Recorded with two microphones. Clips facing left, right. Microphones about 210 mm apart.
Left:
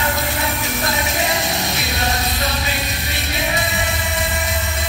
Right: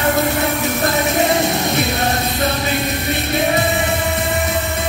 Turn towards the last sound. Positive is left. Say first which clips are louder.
# right 7 dB
turn(degrees=-55)  # may be behind; listen again after turning